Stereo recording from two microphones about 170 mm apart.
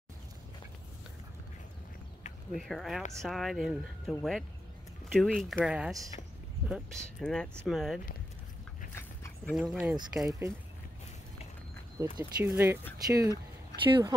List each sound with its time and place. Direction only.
2.5 s speech: centre (ahead or behind)
9.5 s speech: centre (ahead or behind)
12.0 s speech: 20° right (ahead or behind)